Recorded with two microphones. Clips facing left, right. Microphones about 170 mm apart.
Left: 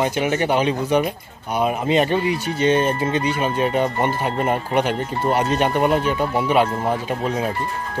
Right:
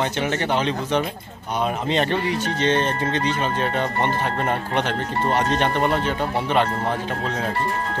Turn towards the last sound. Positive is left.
turn(degrees=10)  # may be behind; listen again after turning